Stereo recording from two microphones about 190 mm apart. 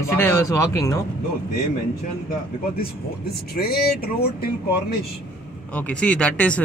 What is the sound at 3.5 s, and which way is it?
Speech, 55° left (ahead or behind).